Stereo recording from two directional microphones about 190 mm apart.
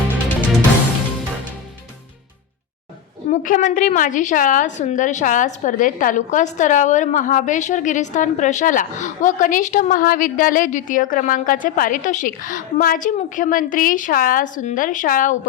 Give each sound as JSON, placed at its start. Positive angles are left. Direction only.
{"t": 3.2, "sound": "a woman's voice", "side_deg": 40}